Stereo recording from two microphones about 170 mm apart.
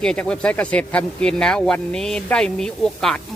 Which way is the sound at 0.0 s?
5° left (ahead or behind).